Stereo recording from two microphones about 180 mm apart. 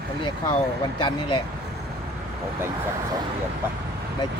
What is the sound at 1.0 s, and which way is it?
Speech, 25° left (ahead or behind).